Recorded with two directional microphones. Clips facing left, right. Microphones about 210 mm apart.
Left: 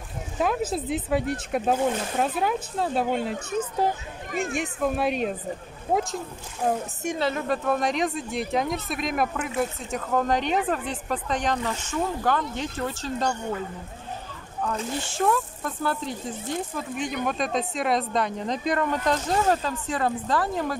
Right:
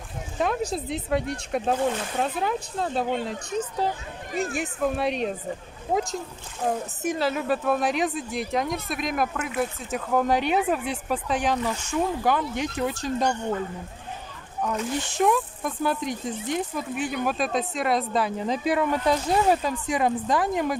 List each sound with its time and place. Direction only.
0.4 s speech: 5° left (ahead or behind)
6.6 s a woman's voice: 5° right (ahead or behind)
14.6 s a woman's voice: 15° right (ahead or behind)
16.9 s a woman's voice: 5° right (ahead or behind)